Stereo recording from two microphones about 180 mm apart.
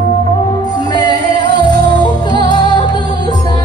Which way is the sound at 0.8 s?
25° left (ahead or behind).